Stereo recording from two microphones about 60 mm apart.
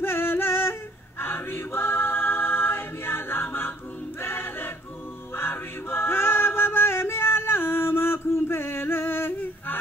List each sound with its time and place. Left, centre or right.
0.0 s singing: left
1.2 s choir: left
5.3 s music: left